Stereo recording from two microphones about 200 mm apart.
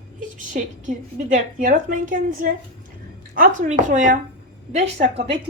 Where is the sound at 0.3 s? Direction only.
40° right (ahead or behind).